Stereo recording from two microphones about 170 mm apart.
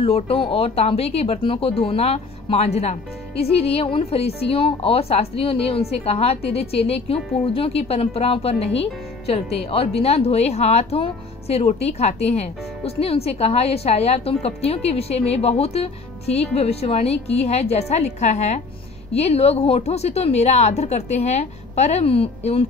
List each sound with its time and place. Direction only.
0.0 s speech: 35° left (ahead or behind)